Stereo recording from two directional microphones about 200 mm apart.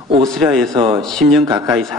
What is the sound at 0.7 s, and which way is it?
Speech, 25° right (ahead or behind).